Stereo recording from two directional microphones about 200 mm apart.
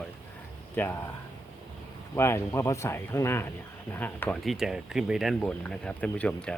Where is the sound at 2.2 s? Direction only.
15° left (ahead or behind).